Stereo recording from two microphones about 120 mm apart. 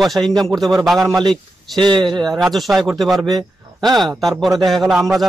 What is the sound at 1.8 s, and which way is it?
Speech, 40° right (ahead or behind).